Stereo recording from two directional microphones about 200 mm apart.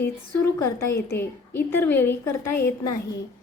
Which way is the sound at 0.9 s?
50° left (ahead or behind).